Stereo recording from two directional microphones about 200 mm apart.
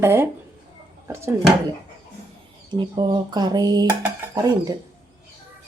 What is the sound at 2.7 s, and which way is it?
Speech, 20° right (ahead or behind).